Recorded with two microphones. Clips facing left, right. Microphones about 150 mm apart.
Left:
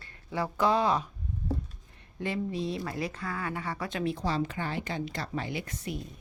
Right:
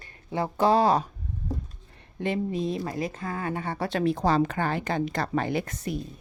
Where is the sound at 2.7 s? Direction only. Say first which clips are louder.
Right 4 dB; 20° right (ahead or behind).